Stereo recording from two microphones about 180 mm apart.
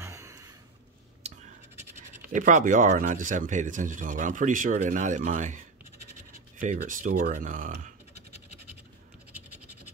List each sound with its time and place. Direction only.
0.0 s a sound: 15° right (ahead or behind)
1.2 s scratch: 35° right (ahead or behind)
1.8 s speech: 45° right (ahead or behind)
6.6 s speech: 50° right (ahead or behind)